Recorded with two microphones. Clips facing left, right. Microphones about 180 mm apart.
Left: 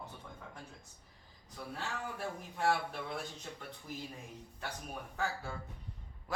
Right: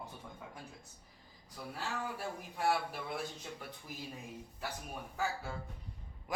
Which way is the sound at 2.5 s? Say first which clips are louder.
Left 1 dB; 5° right (ahead or behind).